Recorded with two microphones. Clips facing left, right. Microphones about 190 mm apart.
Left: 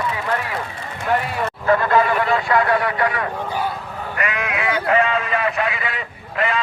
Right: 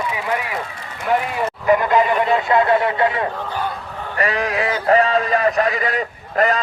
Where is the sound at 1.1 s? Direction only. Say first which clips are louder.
Right 2 dB; 15° right (ahead or behind).